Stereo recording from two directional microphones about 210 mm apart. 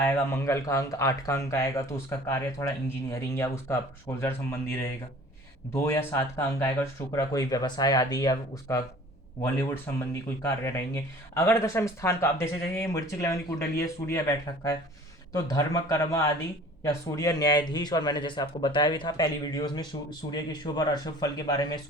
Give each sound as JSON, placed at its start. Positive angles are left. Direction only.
{"t": 0.0, "sound": "speech", "side_deg": 15}
{"t": 5.7, "sound": "speech", "side_deg": 10}